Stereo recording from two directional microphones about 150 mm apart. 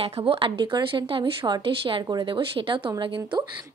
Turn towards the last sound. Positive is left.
turn(degrees=-30)  # may be behind; listen again after turning